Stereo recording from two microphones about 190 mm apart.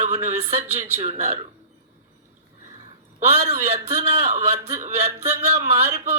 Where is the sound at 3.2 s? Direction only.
35° right (ahead or behind).